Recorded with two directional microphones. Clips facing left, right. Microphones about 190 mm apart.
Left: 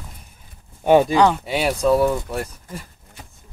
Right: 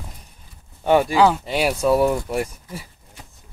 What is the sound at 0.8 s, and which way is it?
Speech, 20° left (ahead or behind).